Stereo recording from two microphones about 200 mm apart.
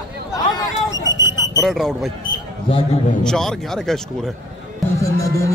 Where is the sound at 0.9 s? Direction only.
65° left (ahead or behind).